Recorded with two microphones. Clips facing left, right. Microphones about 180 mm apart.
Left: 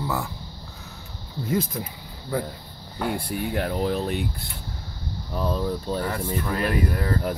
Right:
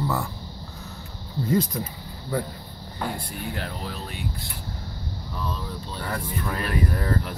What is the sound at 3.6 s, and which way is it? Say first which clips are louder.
Speech: left 9 dB; 50° left (ahead or behind).